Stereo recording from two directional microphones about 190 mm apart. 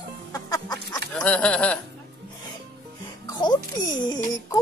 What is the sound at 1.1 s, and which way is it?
Speech, 5° left (ahead or behind).